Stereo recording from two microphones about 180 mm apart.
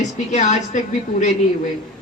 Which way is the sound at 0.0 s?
40° left (ahead or behind).